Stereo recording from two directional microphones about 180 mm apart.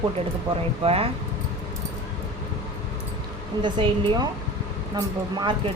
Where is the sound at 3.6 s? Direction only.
25° right (ahead or behind).